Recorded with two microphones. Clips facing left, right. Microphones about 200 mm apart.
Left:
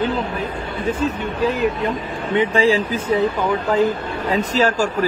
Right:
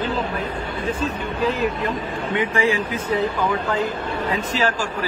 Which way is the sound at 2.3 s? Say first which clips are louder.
Left 5 dB; 30° left (ahead or behind).